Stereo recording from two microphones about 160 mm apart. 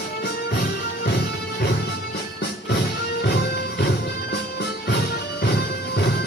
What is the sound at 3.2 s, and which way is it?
Music, 90° left.